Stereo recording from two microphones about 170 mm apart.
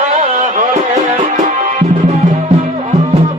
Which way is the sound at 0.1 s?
45° right (ahead or behind).